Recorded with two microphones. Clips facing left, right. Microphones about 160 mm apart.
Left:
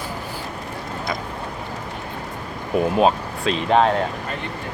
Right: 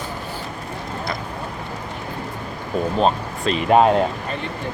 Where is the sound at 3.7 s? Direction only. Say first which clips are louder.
Right 3 dB; 10° right (ahead or behind).